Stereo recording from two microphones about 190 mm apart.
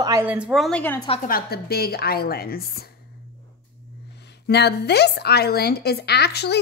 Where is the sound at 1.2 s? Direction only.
50° left (ahead or behind).